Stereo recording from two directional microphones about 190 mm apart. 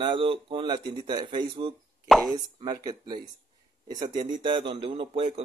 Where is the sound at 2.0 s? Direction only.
Centre (ahead or behind).